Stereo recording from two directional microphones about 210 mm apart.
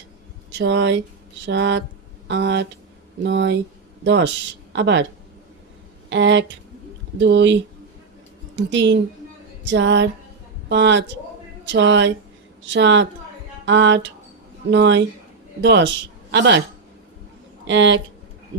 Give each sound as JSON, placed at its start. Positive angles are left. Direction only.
{"t": 0.6, "sound": "speech", "side_deg": -60}
{"t": 6.1, "sound": "speech", "side_deg": -60}
{"t": 17.7, "sound": "speech", "side_deg": -60}